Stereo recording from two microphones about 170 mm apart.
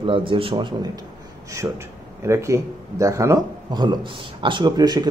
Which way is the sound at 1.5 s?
15° right (ahead or behind).